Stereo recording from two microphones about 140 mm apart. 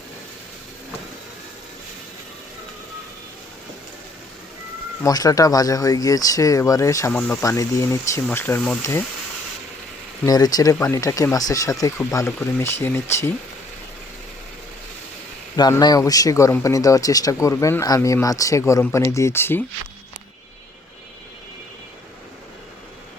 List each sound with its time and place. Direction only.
5.0 s speech: 25° left (ahead or behind)
7.1 s speech: 10° left (ahead or behind)
7.4 s speech: 25° left (ahead or behind)
10.2 s speech: 25° left (ahead or behind)
15.8 s speech: 25° left (ahead or behind)